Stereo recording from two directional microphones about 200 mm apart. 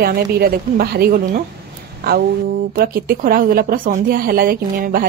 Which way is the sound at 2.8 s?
50° right (ahead or behind).